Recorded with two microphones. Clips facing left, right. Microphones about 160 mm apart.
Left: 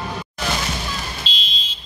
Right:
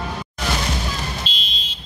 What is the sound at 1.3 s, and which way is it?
Fire alarm, 60° right (ahead or behind).